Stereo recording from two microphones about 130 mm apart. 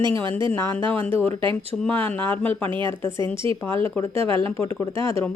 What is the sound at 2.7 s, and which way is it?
Speech, 40° right (ahead or behind).